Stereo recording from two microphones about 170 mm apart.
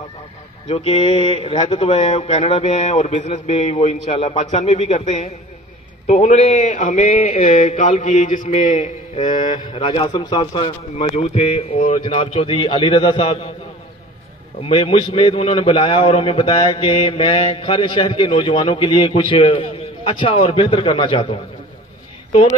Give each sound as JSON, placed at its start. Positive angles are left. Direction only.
{"t": 0.7, "sound": "speech", "side_deg": 35}
{"t": 6.8, "sound": "mantra", "side_deg": 50}
{"t": 9.2, "sound": "a man's voice", "side_deg": 25}
{"t": 14.6, "sound": "a man's voice", "side_deg": 30}